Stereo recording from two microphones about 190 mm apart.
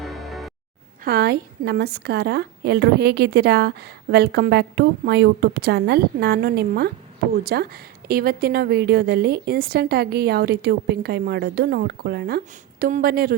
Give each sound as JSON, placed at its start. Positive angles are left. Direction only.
{"t": 0.0, "sound": "music", "side_deg": 0}
{"t": 1.0, "sound": "a woman's voice", "side_deg": -55}